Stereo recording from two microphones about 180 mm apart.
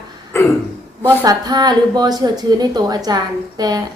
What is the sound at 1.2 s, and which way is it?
Speech, 20° right (ahead or behind).